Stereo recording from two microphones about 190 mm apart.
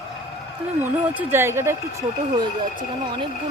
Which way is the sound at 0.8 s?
10° right (ahead or behind).